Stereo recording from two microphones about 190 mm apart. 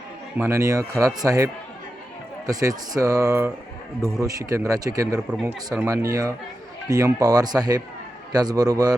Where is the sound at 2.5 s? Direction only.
20° right (ahead or behind).